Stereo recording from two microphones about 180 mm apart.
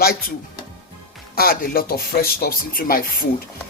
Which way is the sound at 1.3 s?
55° left (ahead or behind).